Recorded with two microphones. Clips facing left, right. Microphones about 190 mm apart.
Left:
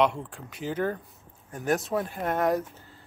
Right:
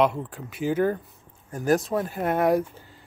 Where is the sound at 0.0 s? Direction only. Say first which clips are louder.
Right 2 dB; 5° right (ahead or behind).